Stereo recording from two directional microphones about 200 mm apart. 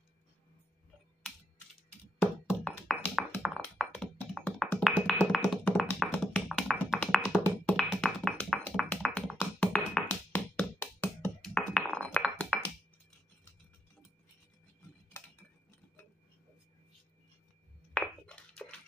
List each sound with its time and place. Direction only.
2.6 s a sound: 5° right (ahead or behind)
4.6 s music: 5° left (ahead or behind)
4.9 s music: 5° right (ahead or behind)
6.5 s music: 5° right (ahead or behind)
7.0 s tap: 10° left (ahead or behind)
7.7 s music: centre (ahead or behind)
15.2 s cutlery: 15° left (ahead or behind)
17.9 s a sound: 5° left (ahead or behind)